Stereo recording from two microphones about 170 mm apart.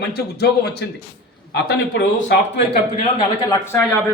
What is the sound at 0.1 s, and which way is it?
A man's voice, 70° left (ahead or behind).